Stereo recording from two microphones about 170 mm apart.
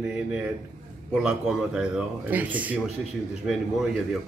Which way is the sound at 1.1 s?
5° right (ahead or behind).